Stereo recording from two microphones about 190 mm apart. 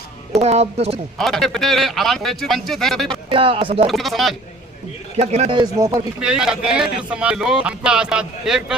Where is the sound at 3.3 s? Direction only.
30° right (ahead or behind).